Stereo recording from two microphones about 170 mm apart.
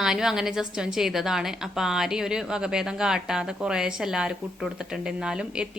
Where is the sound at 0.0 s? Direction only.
5° right (ahead or behind).